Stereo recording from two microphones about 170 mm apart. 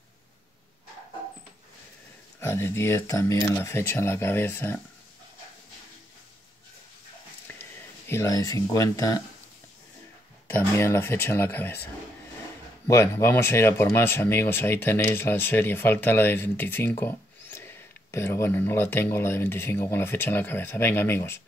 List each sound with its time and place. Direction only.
2.4 s speech: 15° left (ahead or behind)
8.1 s speech: 20° left (ahead or behind)
10.5 s speech: 15° left (ahead or behind)
12.8 s speech: 15° left (ahead or behind)